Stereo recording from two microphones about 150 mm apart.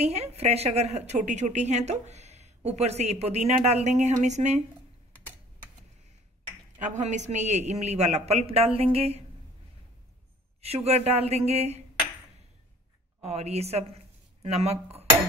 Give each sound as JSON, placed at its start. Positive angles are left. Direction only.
{"t": 0.0, "sound": "a woman's voice", "side_deg": -45}
{"t": 6.8, "sound": "a woman's voice", "side_deg": -55}
{"t": 10.6, "sound": "a woman's voice", "side_deg": -45}
{"t": 13.2, "sound": "speech", "side_deg": -45}